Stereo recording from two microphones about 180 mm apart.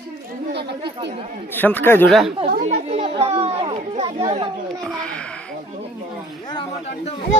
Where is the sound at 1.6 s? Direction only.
10° left (ahead or behind).